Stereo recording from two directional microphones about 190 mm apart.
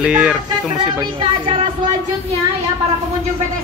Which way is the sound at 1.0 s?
25° right (ahead or behind).